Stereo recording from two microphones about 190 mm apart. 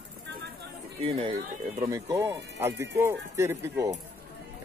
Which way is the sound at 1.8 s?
15° right (ahead or behind).